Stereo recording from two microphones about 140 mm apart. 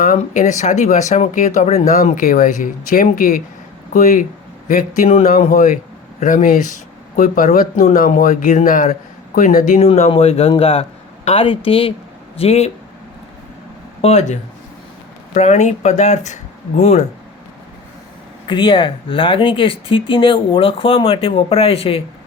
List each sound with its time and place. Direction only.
0.0 s speech: 70° left (ahead or behind); by 1.9 s 55° left (ahead or behind)
2.0 s speech: 75° left (ahead or behind)
3.9 s speech: 70° left (ahead or behind)
9.8 s speech: 45° left (ahead or behind)
14.0 s speech: 55° left (ahead or behind)
18.4 s speech: 35° left (ahead or behind)